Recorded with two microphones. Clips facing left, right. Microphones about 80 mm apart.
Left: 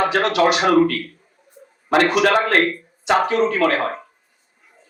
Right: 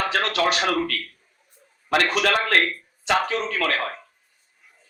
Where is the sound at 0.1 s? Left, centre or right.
Centre.